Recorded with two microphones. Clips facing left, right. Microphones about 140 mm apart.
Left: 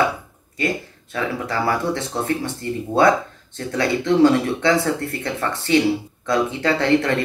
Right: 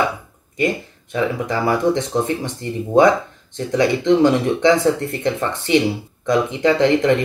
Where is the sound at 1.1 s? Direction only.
20° right (ahead or behind).